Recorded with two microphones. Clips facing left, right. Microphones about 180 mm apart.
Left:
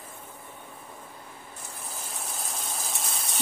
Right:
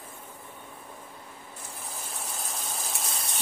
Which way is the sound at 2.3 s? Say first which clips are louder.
Left 1 dB; centre (ahead or behind).